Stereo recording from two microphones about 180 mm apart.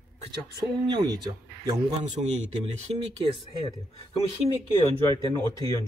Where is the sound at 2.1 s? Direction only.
40° right (ahead or behind).